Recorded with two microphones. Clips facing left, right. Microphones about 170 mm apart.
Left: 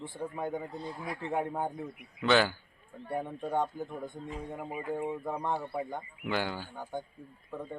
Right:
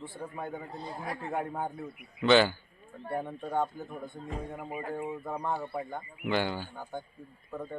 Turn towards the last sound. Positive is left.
turn(degrees=10)  # may be behind; listen again after turning